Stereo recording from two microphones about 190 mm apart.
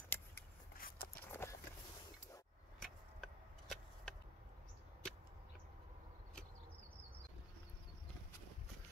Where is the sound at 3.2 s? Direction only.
Centre (ahead or behind).